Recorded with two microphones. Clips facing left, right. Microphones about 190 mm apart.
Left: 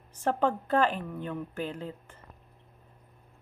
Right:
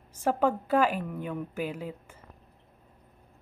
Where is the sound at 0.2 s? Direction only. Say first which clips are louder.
Right 1 dB; 5° right (ahead or behind).